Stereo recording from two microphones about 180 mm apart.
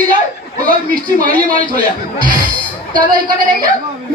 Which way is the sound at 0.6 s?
50° right (ahead or behind).